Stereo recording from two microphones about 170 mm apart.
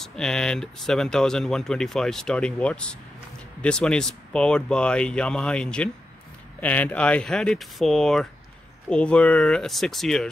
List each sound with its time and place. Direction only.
0.0 s speech: 5° left (ahead or behind)